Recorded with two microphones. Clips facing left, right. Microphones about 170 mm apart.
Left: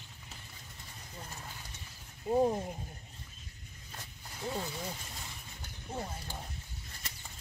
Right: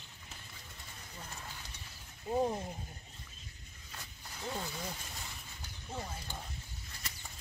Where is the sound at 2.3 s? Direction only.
15° left (ahead or behind).